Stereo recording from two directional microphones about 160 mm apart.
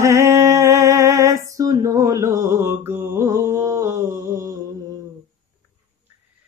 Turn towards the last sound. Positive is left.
turn(degrees=-20)  # may be behind; listen again after turning